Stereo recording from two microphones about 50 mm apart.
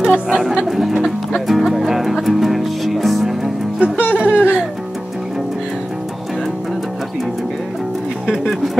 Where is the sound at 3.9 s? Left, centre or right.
Left.